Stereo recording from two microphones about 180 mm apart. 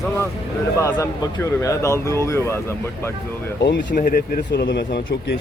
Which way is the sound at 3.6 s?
70° left (ahead or behind).